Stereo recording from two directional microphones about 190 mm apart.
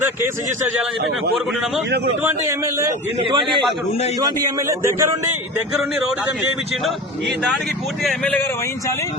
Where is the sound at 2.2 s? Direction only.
15° right (ahead or behind).